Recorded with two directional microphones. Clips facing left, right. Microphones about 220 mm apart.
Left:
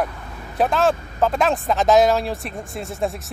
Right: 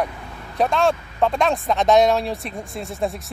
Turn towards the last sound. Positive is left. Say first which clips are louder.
# even
turn(degrees=0)  # may be behind; listen again after turning